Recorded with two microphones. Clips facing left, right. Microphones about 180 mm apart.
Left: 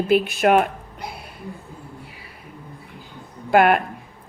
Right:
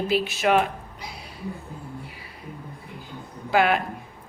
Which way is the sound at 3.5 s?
55° left (ahead or behind).